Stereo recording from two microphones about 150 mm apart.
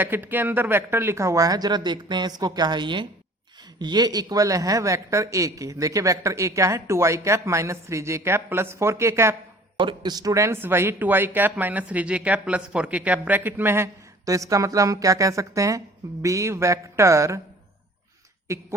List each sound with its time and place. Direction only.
0.0 s a man's voice: 15° right (ahead or behind)
9.7 s a man's voice: 30° right (ahead or behind)
18.5 s a man's voice: 20° right (ahead or behind)